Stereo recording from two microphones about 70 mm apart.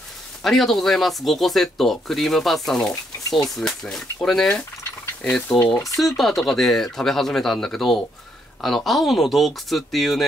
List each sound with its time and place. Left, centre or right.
0.4 s speech: centre
3.3 s speech: left
3.5 s speech: centre